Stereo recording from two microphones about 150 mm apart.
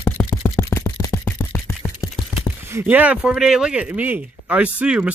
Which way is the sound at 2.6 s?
15° right (ahead or behind).